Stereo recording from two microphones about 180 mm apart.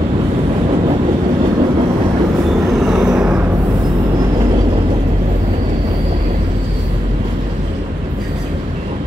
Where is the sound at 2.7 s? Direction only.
Centre (ahead or behind).